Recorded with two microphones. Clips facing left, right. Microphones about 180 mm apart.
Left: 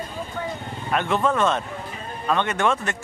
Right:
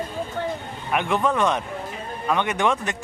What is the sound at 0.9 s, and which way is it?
Speech, 15° right (ahead or behind).